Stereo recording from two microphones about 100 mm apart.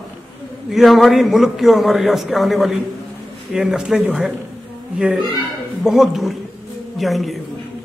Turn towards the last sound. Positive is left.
turn(degrees=0)  # may be behind; listen again after turning